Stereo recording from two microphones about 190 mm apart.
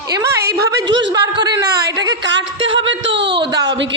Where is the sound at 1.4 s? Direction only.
20° right (ahead or behind).